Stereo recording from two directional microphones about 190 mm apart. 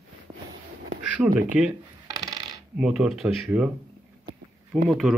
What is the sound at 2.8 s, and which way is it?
Speech, 5° right (ahead or behind).